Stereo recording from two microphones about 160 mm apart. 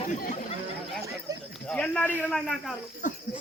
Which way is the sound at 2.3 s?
Centre (ahead or behind).